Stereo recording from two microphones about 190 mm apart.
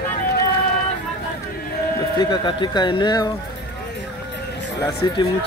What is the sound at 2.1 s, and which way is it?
A man's voice, 25° left (ahead or behind).